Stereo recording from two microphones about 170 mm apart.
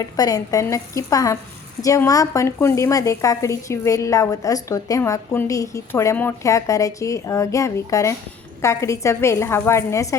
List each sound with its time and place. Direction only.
0.0 s a woman's voice: 20° left (ahead or behind)